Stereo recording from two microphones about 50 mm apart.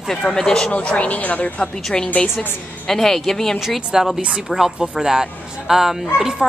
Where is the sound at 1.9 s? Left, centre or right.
Centre.